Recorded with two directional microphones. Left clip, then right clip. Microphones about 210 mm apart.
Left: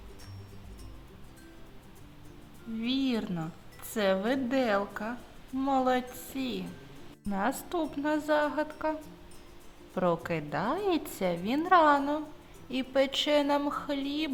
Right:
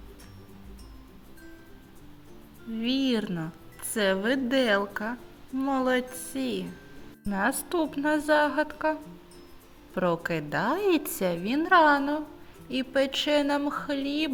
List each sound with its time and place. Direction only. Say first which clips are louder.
2.8 s a woman's voice: right 4 dB; 10° right (ahead or behind)